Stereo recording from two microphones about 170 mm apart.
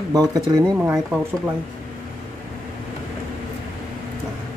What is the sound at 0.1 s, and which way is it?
Speech, 20° right (ahead or behind).